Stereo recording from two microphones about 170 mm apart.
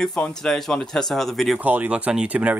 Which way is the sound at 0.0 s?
5° left (ahead or behind).